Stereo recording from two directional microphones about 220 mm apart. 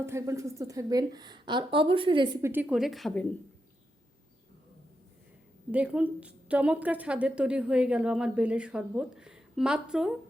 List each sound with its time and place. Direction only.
0.0 s a woman's voice: 10° right (ahead or behind)
2.5 s a woman's voice: 5° right (ahead or behind)
5.7 s a woman's voice: 5° right (ahead or behind)